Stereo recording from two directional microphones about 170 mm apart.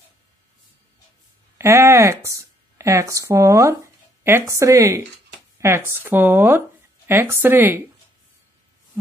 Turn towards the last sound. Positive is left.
turn(degrees=-15)  # may be behind; listen again after turning